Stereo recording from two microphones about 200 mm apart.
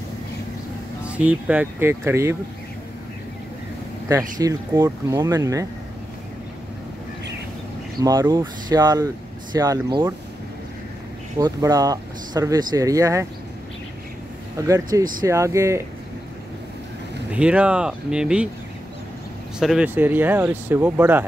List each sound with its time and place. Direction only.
1.0 s speech: 5° right (ahead or behind)
4.1 s speech: 20° right (ahead or behind)
8.0 s speech: 20° right (ahead or behind)
11.3 s speech: 15° right (ahead or behind)
14.7 s speech: 15° right (ahead or behind)
17.3 s speech: 5° right (ahead or behind)
19.6 s speech: 5° right (ahead or behind)